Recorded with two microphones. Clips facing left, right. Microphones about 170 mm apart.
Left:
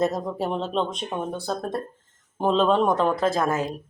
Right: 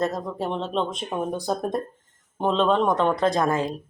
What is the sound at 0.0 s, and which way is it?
Speech, 10° left (ahead or behind).